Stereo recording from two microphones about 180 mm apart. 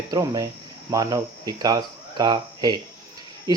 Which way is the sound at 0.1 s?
20° right (ahead or behind).